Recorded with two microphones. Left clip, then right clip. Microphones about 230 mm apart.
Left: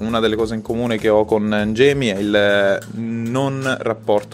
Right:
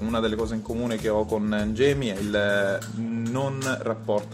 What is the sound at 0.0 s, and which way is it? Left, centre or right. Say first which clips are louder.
Speech: left 8 dB; left.